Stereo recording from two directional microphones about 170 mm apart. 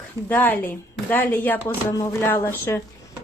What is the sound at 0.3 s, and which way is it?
A woman's voice, 10° left (ahead or behind).